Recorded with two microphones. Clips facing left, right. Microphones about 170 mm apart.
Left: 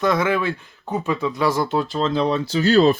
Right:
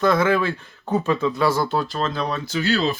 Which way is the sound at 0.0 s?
15° left (ahead or behind).